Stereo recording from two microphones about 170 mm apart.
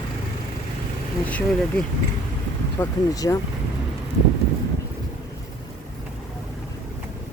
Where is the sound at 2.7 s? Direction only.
20° left (ahead or behind).